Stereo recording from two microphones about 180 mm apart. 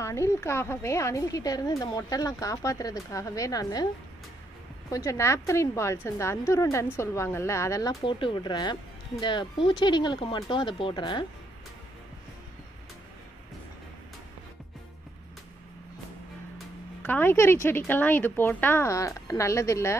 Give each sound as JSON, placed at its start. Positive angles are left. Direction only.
{"t": 0.0, "sound": "a woman's voice", "side_deg": 15}
{"t": 4.9, "sound": "a woman's voice", "side_deg": 15}
{"t": 17.0, "sound": "a woman's voice", "side_deg": 10}